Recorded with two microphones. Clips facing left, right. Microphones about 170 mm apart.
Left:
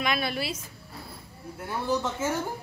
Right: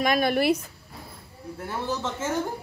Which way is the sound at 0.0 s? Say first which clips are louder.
Right 7 dB; 45° right (ahead or behind).